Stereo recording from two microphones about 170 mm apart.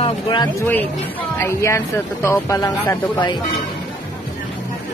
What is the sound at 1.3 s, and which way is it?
Speech, 15° left (ahead or behind).